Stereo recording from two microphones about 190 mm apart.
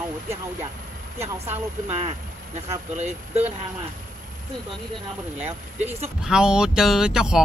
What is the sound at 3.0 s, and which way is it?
Speech, 35° right (ahead or behind).